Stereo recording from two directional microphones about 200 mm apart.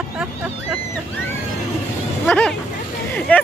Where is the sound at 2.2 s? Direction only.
5° left (ahead or behind).